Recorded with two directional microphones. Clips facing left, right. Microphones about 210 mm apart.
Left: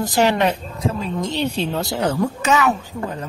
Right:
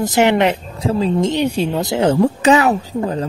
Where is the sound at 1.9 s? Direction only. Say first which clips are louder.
Right 6 dB; 25° right (ahead or behind).